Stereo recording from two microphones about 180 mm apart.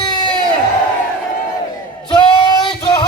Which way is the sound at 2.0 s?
25° left (ahead or behind).